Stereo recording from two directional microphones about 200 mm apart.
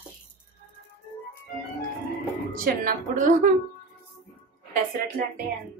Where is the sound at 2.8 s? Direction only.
40° right (ahead or behind).